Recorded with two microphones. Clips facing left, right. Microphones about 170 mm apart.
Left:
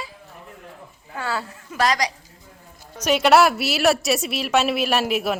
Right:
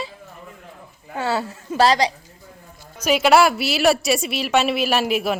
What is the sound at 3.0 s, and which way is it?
A woman's voice, centre (ahead or behind).